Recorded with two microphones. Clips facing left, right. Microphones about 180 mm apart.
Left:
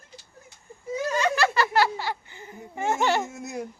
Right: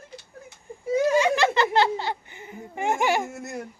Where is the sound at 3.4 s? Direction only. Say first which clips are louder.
Left 1 dB; centre (ahead or behind).